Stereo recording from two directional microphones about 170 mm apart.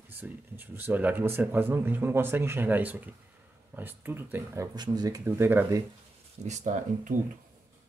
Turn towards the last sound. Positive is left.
turn(degrees=-45)  # may be behind; listen again after turning